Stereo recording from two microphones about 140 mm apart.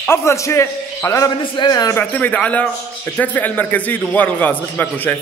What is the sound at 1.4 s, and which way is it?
Speech, 30° left (ahead or behind).